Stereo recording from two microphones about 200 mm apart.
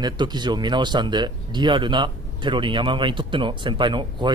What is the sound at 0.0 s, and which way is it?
Speech, 20° right (ahead or behind).